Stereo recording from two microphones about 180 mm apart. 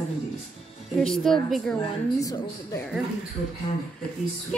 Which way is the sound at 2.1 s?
20° left (ahead or behind).